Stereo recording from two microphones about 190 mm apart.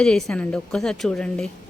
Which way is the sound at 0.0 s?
5° left (ahead or behind).